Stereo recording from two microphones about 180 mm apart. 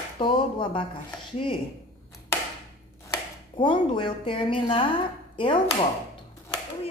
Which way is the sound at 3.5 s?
25° left (ahead or behind).